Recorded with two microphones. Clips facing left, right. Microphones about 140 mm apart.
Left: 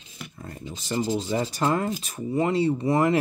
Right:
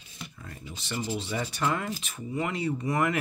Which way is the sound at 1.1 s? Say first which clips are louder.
Left 6 dB; 35° left (ahead or behind).